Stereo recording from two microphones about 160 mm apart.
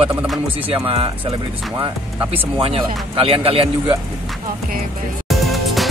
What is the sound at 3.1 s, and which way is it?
Speech, 35° right (ahead or behind).